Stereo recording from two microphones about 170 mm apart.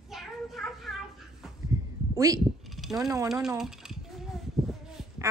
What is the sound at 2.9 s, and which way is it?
Speech, 20° right (ahead or behind).